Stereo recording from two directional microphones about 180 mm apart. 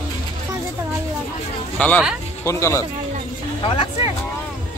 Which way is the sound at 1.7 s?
5° left (ahead or behind).